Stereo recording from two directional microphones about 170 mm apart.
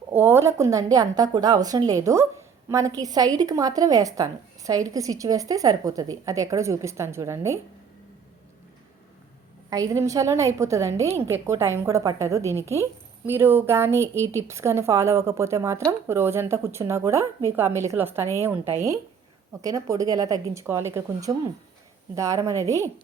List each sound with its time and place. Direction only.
0.1 s a woman's voice: 15° right (ahead or behind)
9.6 s a woman's voice: 20° right (ahead or behind)